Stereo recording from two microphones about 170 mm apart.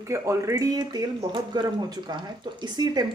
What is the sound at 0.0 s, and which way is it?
Speech, 15° right (ahead or behind).